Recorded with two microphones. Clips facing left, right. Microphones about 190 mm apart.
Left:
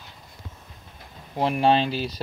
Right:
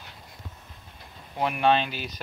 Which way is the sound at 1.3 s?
30° left (ahead or behind).